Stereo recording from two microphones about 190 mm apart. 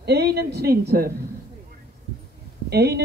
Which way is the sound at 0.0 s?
60° right (ahead or behind).